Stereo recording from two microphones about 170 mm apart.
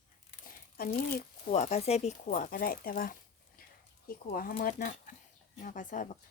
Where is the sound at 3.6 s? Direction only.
55° left (ahead or behind).